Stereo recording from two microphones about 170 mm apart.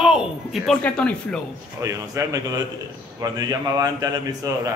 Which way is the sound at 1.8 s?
20° right (ahead or behind).